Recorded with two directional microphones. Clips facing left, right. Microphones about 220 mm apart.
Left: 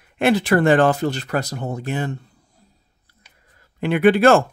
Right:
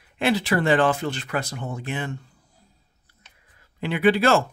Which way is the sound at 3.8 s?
50° left (ahead or behind).